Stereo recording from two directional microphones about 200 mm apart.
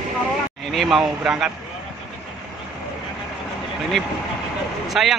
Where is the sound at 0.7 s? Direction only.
Centre (ahead or behind).